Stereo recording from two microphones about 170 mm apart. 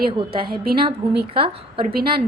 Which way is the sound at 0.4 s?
60° right (ahead or behind).